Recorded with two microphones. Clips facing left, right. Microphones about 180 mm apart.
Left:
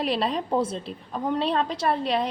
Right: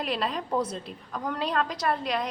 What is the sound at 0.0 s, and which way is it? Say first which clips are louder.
A woman's voice: left 4 dB; 35° left (ahead or behind).